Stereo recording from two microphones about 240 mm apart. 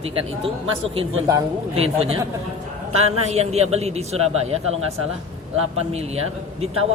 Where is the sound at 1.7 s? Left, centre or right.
Right.